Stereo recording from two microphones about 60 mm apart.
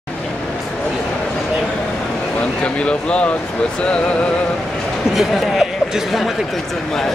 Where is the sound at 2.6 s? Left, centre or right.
Centre.